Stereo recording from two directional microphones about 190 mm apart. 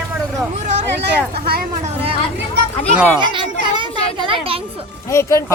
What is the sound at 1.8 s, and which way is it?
Speech, 30° right (ahead or behind).